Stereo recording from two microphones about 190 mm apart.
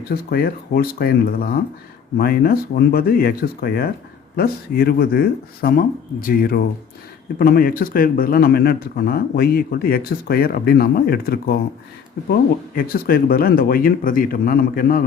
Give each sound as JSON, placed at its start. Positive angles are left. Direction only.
{"t": 0.1, "sound": "speech", "side_deg": 55}